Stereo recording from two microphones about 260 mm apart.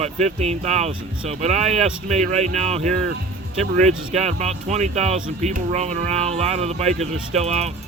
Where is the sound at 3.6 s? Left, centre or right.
Centre.